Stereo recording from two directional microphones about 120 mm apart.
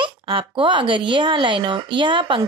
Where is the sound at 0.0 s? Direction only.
45° right (ahead or behind).